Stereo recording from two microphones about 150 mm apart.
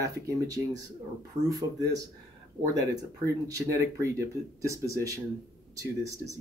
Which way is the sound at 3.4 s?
20° right (ahead or behind).